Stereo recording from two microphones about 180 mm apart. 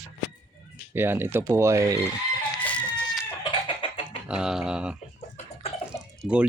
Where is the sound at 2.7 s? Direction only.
5° left (ahead or behind).